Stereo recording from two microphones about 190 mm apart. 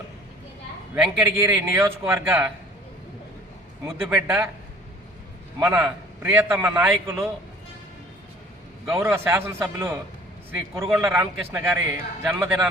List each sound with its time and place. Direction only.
0.9 s a man's voice: 5° right (ahead or behind)
3.8 s a man's voice: 10° right (ahead or behind)
5.5 s a man's voice: 15° right (ahead or behind)
8.9 s a man's voice: 10° right (ahead or behind)